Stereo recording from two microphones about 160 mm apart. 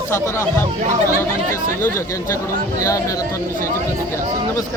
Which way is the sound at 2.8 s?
20° left (ahead or behind).